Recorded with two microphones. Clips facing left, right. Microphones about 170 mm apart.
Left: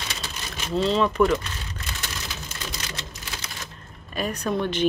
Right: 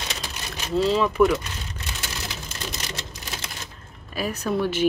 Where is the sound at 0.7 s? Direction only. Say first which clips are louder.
Right 1 dB; 5° right (ahead or behind).